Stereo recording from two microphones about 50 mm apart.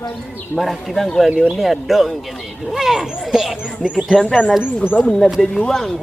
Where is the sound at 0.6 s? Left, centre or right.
Centre.